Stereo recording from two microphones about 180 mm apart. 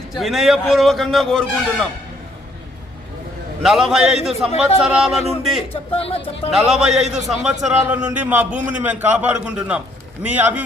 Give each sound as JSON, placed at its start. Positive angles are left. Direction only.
{"t": 0.1, "sound": "a man's voice", "side_deg": 0}
{"t": 3.6, "sound": "a man's voice", "side_deg": 0}
{"t": 5.5, "sound": "a man's voice", "side_deg": 30}
{"t": 6.5, "sound": "a man's voice", "side_deg": 0}